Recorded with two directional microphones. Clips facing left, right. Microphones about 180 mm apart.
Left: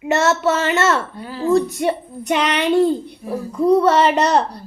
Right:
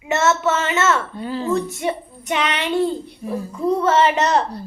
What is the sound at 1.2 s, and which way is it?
Speech, 5° left (ahead or behind).